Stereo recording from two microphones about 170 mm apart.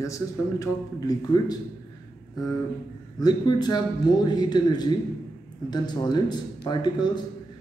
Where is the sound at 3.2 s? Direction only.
25° left (ahead or behind).